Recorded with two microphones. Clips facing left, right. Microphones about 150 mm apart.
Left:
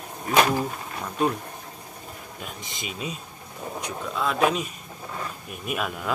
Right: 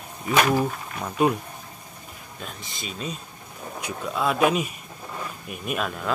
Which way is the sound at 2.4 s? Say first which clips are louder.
Right 1 dB; 10° left (ahead or behind).